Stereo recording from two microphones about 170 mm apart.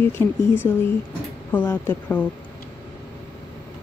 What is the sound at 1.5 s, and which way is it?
Speech, 10° left (ahead or behind).